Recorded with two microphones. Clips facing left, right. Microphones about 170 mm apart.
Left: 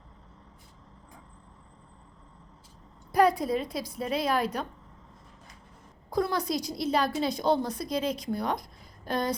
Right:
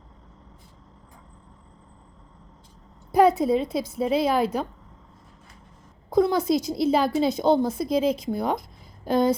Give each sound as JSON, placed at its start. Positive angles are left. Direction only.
{"t": 3.1, "sound": "a woman's voice", "side_deg": -25}
{"t": 6.1, "sound": "a woman's voice", "side_deg": -20}